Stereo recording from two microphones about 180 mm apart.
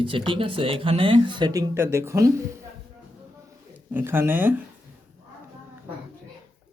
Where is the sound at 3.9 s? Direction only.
10° right (ahead or behind).